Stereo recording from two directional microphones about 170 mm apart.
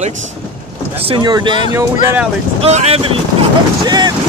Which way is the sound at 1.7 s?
10° right (ahead or behind).